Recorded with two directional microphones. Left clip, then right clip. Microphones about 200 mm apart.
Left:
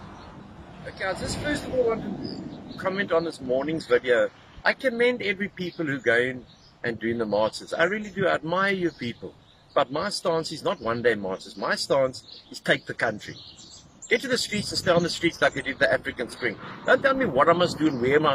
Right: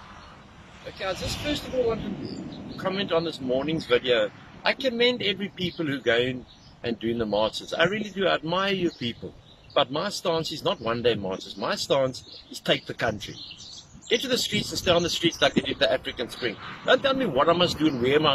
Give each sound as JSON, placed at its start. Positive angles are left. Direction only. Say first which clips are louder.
{"t": 0.9, "sound": "speech", "louder": "left 1 dB", "side_deg": 0}
{"t": 9.8, "sound": "speech", "louder": "even", "side_deg": 0}